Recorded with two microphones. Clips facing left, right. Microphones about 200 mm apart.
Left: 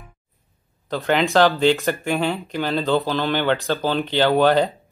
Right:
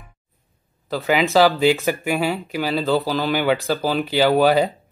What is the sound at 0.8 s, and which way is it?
Speech, 5° right (ahead or behind).